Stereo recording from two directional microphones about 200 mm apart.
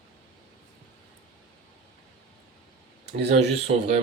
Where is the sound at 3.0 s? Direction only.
55° right (ahead or behind).